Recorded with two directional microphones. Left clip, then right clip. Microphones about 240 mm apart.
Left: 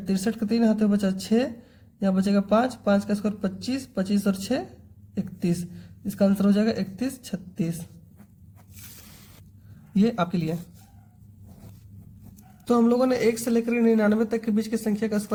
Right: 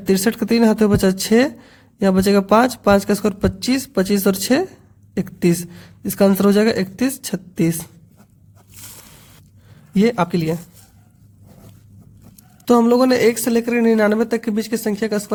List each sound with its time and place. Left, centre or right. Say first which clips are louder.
0.1 s speech: right 10 dB; right
9.9 s speech: right 8 dB; right
12.6 s a woman's voice: right 8 dB; right